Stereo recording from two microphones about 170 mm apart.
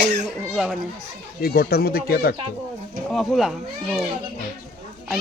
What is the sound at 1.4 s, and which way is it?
Speech, 65° left (ahead or behind).